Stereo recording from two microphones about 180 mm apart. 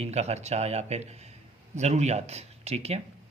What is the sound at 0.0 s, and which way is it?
Speech, 35° right (ahead or behind).